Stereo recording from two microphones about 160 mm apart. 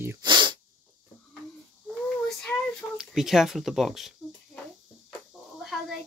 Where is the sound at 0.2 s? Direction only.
30° right (ahead or behind).